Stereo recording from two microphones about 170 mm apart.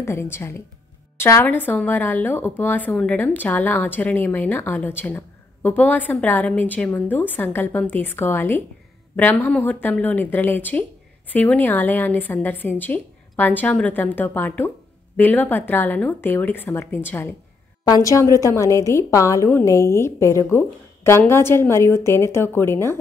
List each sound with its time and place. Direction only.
0.0 s a woman's voice: 15° left (ahead or behind)